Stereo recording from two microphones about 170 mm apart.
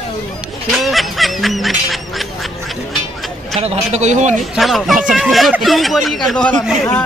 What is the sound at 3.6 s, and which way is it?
Speech, 40° right (ahead or behind).